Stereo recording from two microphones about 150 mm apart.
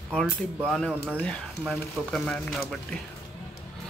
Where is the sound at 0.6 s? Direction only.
Centre (ahead or behind).